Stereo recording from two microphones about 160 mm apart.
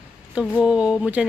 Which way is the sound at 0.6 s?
5° right (ahead or behind).